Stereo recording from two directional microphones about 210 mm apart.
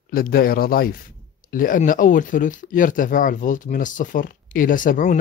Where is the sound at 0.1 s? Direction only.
45° left (ahead or behind).